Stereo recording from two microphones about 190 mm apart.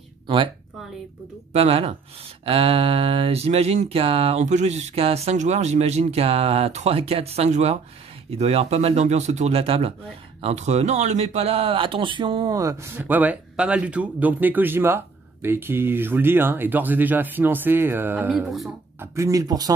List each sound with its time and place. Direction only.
1.5 s speech: 35° right (ahead or behind)